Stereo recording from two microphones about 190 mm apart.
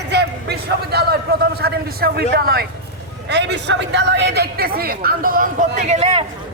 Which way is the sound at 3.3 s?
65° right (ahead or behind).